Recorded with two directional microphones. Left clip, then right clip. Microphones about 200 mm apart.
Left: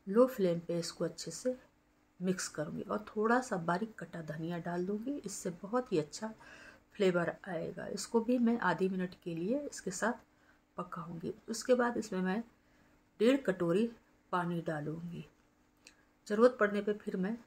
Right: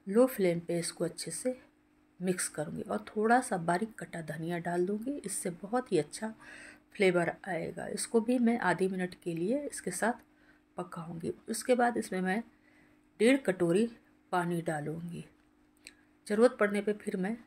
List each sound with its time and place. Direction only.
0.1 s speech: 10° right (ahead or behind)